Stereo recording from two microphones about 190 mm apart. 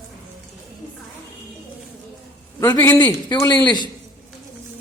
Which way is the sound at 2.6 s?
10° left (ahead or behind).